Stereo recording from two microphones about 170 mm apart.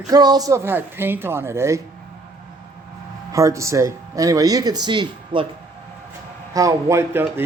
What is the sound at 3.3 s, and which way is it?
Speech, 20° right (ahead or behind).